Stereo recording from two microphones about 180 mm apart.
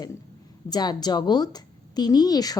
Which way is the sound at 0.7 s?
20° left (ahead or behind).